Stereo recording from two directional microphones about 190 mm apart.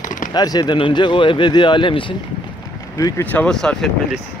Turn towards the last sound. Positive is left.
turn(degrees=0)  # may be behind; listen again after turning